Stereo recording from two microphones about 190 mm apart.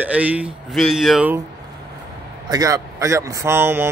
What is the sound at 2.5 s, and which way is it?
A man's voice, 15° right (ahead or behind).